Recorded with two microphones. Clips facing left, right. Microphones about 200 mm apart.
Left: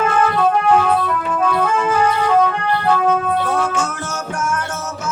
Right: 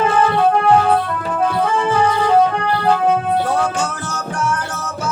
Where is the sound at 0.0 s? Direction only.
30° right (ahead or behind).